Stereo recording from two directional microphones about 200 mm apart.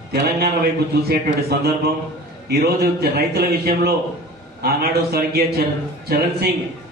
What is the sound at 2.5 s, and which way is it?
A man's voice, 50° right (ahead or behind).